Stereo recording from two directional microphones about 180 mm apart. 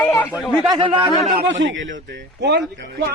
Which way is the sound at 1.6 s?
90° right.